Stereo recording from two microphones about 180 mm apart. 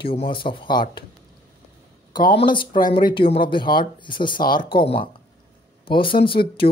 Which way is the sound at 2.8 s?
50° left (ahead or behind).